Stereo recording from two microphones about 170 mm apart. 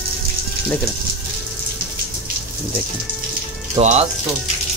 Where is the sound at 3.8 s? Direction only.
40° right (ahead or behind).